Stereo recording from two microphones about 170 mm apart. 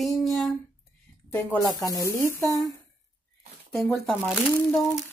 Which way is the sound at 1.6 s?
20° left (ahead or behind).